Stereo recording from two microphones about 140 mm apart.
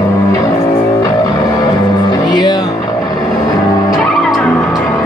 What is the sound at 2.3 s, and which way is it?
Music, 30° left (ahead or behind).